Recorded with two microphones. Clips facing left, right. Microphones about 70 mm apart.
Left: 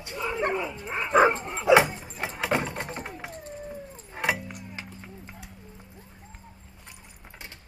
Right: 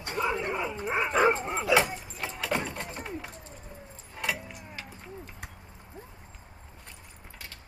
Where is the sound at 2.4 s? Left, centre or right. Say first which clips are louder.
Left 4 dB; left.